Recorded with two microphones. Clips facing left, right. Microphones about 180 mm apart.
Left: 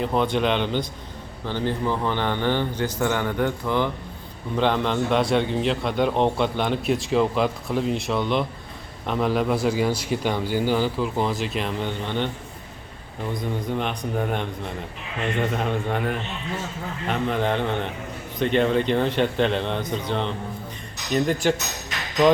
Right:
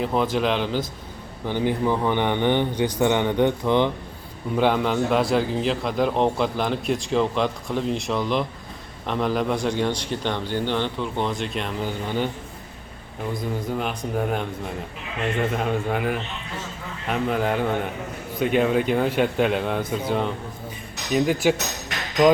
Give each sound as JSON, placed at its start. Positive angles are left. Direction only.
{"t": 0.0, "sound": "a man's voice", "side_deg": 0}
{"t": 1.5, "sound": "a man's voice", "side_deg": -15}
{"t": 4.5, "sound": "a man's voice", "side_deg": -5}
{"t": 13.3, "sound": "a man's voice", "side_deg": -5}